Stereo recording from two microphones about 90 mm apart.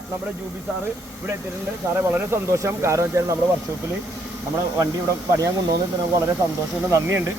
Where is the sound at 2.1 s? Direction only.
30° right (ahead or behind).